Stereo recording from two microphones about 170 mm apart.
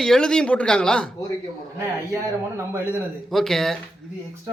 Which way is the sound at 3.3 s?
Centre (ahead or behind).